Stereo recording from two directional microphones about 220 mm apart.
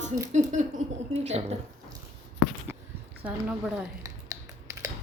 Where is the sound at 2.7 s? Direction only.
10° right (ahead or behind).